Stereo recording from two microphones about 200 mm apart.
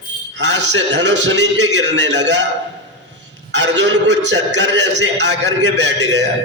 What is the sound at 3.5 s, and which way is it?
A man's voice, 60° right (ahead or behind).